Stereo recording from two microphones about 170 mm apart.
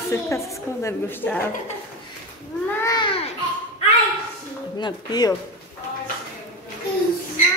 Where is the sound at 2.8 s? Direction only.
25° left (ahead or behind).